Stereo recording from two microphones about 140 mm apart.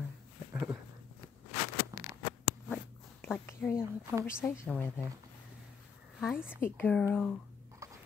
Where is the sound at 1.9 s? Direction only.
25° right (ahead or behind).